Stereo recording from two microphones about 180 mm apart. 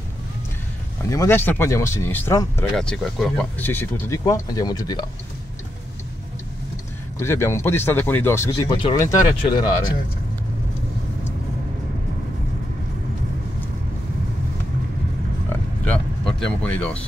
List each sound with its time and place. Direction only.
1.1 s speech: 15° left (ahead or behind)
7.2 s speech: 15° left (ahead or behind)
15.5 s a sound: 5° left (ahead or behind)